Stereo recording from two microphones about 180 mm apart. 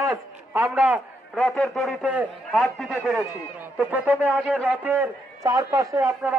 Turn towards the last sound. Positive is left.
turn(degrees=-20)  # may be behind; listen again after turning